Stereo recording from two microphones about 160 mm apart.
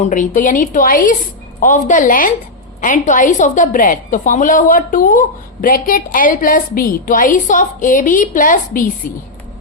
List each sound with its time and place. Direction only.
0.0 s a woman's voice: 50° left (ahead or behind)